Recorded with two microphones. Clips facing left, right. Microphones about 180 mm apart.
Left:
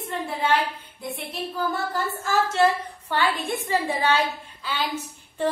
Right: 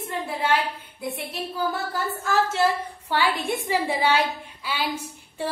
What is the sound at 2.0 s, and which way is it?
A woman's voice, centre (ahead or behind).